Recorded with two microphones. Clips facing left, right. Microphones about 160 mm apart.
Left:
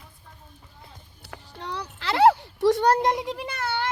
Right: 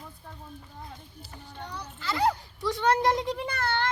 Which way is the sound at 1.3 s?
70° left (ahead or behind).